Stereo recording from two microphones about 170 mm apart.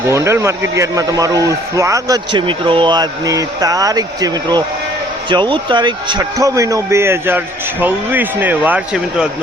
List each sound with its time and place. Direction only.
0.1 s a man's voice: 15° right (ahead or behind)